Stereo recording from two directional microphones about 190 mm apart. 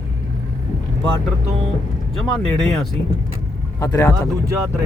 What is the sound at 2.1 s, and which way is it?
Speech, 5° left (ahead or behind).